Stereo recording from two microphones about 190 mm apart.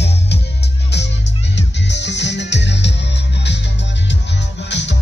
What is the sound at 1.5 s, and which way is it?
Music, 65° left (ahead or behind).